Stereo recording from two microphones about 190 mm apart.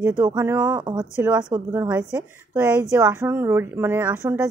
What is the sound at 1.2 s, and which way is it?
Speech, 10° right (ahead or behind).